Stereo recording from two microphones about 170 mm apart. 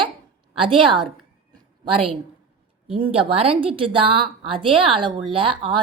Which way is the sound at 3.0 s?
35° right (ahead or behind).